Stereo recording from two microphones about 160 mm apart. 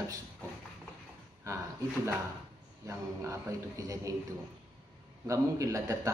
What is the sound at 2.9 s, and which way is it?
A man's voice, 20° right (ahead or behind).